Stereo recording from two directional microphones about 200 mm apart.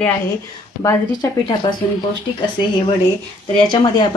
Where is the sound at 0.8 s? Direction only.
15° left (ahead or behind).